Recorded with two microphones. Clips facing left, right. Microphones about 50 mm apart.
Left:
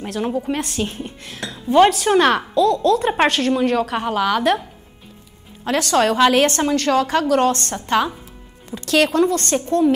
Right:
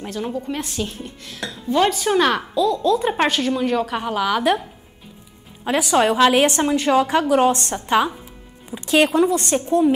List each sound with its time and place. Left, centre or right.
0.2 s a woman's voice: centre
2.5 s a woman's voice: centre
5.7 s a woman's voice: centre